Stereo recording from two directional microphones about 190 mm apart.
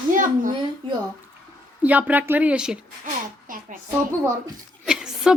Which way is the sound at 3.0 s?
45° right (ahead or behind).